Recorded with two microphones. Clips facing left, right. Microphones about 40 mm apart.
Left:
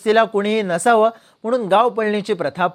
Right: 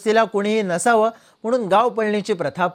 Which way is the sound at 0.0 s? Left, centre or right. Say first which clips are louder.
Left 2 dB; left.